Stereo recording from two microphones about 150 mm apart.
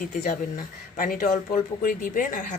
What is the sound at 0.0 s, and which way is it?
Speech, 60° left (ahead or behind).